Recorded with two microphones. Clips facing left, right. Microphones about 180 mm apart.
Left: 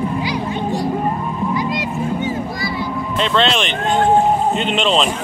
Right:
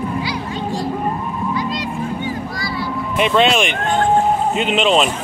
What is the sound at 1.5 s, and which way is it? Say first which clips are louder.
Honk: left 1 dB; 15° left (ahead or behind).